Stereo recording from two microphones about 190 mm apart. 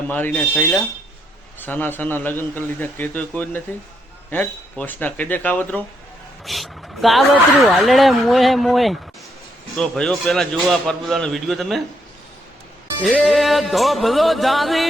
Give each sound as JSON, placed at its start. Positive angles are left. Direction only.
{"t": 0.1, "sound": "a man's voice", "side_deg": 10}
{"t": 13.0, "sound": "a man's voice", "side_deg": 0}